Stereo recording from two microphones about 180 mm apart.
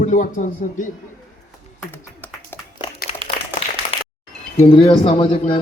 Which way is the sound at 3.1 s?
35° left (ahead or behind).